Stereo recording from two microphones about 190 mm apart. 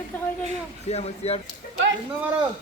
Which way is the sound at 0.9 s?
35° left (ahead or behind).